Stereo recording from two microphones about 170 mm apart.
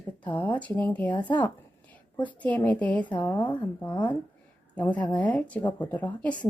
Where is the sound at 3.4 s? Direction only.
25° left (ahead or behind).